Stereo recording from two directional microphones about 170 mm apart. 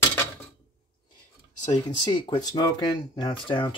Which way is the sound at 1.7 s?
25° left (ahead or behind).